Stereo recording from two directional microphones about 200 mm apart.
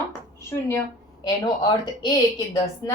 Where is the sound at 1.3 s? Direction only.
20° left (ahead or behind).